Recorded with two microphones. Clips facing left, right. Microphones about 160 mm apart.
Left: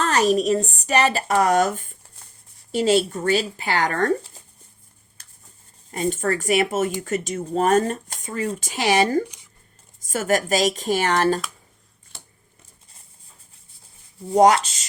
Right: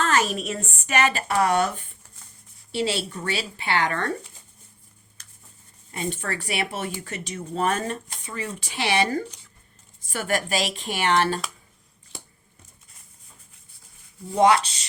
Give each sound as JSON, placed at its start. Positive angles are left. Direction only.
{"t": 0.0, "sound": "speech", "side_deg": 40}
{"t": 5.9, "sound": "speech", "side_deg": 40}
{"t": 14.3, "sound": "speech", "side_deg": 40}